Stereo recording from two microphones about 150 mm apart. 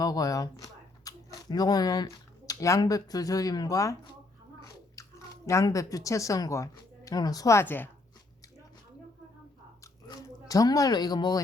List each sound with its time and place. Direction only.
0.0 s speech: 25° left (ahead or behind)
9.8 s biting: 20° left (ahead or behind)
10.5 s speech: 25° left (ahead or behind)